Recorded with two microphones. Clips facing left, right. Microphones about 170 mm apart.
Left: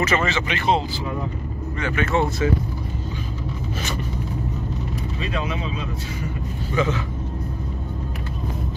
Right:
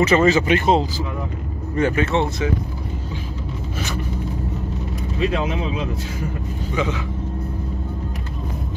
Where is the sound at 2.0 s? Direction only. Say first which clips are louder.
Right 1 dB; 25° right (ahead or behind).